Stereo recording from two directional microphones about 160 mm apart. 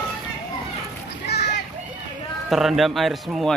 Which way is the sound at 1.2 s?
90° left.